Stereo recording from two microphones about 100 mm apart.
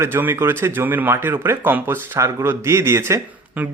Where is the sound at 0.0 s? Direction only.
20° right (ahead or behind).